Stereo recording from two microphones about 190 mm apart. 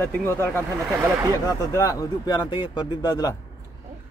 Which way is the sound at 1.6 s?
20° left (ahead or behind).